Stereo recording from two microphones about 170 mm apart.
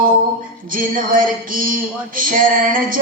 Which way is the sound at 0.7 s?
55° right (ahead or behind).